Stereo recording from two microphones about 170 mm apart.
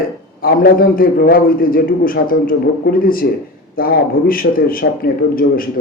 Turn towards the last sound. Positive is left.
turn(degrees=60)  # may be behind; listen again after turning